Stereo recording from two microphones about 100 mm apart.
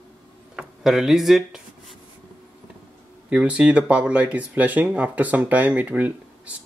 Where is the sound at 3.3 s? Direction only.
10° right (ahead or behind).